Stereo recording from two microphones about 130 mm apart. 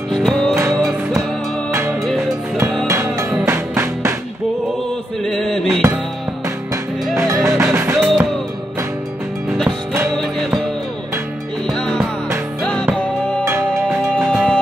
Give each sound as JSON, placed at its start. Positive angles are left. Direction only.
{"t": 0.1, "sound": "music", "side_deg": 5}
{"t": 1.7, "sound": "music", "side_deg": -15}
{"t": 5.2, "sound": "music", "side_deg": 5}
{"t": 7.4, "sound": "music", "side_deg": -20}
{"t": 7.9, "sound": "music", "side_deg": 0}
{"t": 10.1, "sound": "music", "side_deg": 5}
{"t": 11.7, "sound": "music", "side_deg": 5}